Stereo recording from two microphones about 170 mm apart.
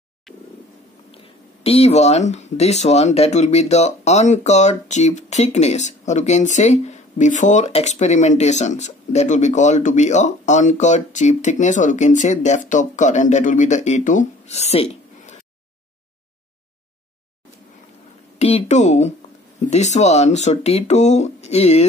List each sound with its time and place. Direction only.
1.1 s speech: 35° left (ahead or behind)
18.4 s speech: 40° left (ahead or behind)